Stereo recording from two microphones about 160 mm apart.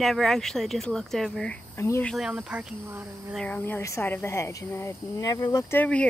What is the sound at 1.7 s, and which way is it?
Speech, 20° left (ahead or behind).